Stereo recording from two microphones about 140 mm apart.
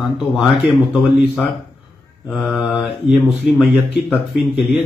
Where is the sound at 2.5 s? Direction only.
Centre (ahead or behind).